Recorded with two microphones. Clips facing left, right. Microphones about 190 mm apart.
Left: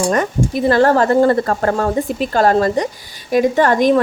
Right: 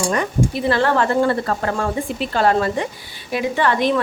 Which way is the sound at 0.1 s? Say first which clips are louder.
Left 3 dB; 45° left (ahead or behind).